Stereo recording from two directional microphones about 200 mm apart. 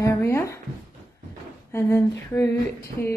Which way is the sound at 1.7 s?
10° left (ahead or behind).